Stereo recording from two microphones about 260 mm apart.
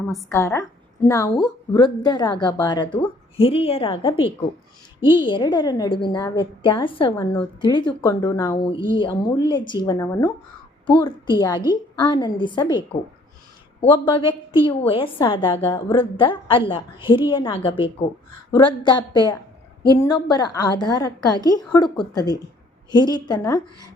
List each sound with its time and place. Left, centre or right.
0.0 s a woman's voice: centre
0.3 s a woman's voice: centre